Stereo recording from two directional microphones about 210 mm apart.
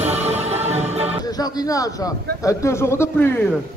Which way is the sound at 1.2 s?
20° left (ahead or behind).